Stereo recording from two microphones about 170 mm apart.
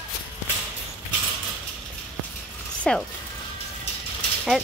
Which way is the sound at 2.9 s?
5° left (ahead or behind).